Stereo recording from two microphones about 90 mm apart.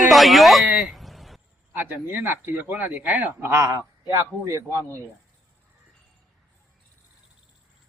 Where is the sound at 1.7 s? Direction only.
20° right (ahead or behind).